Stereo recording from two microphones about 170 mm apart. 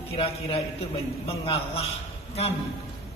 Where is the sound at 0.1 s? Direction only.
35° left (ahead or behind).